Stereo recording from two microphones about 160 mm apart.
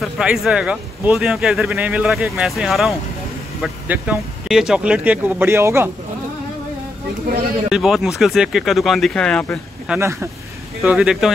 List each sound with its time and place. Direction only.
0.0 s speech: 5° right (ahead or behind)
7.7 s speech: centre (ahead or behind)
9.9 s speech: 15° right (ahead or behind)
10.8 s speech: 5° right (ahead or behind)